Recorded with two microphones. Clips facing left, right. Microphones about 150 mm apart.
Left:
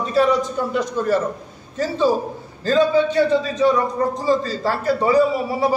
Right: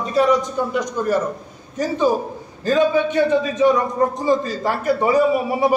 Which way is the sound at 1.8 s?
20° right (ahead or behind).